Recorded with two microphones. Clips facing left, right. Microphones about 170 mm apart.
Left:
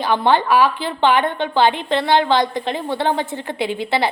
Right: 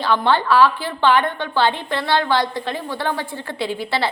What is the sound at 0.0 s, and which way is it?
A woman's voice, 20° left (ahead or behind).